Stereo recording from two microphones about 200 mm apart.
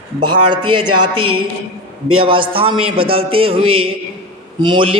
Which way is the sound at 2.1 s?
25° right (ahead or behind).